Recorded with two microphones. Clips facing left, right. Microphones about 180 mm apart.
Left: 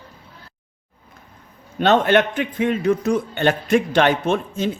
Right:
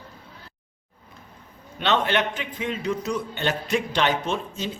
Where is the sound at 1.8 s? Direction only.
50° left (ahead or behind).